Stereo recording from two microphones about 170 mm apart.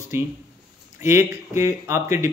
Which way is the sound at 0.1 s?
15° right (ahead or behind).